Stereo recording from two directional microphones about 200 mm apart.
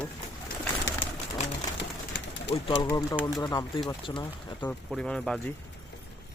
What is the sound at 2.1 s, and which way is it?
Pigeon, 55° left (ahead or behind).